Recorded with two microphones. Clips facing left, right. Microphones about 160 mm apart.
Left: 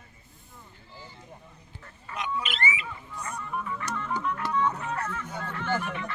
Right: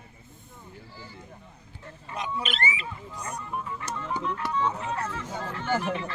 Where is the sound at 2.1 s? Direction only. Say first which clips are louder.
Even; 35° right (ahead or behind).